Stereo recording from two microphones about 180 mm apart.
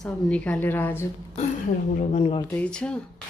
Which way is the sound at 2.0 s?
40° left (ahead or behind).